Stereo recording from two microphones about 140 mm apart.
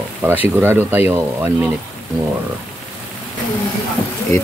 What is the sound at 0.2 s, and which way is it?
Speech, 15° right (ahead or behind).